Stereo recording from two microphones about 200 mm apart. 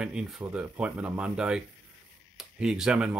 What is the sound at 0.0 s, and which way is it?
Speech, 5° right (ahead or behind).